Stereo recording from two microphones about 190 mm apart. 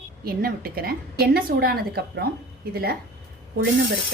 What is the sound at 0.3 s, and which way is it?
A woman's voice, 50° right (ahead or behind).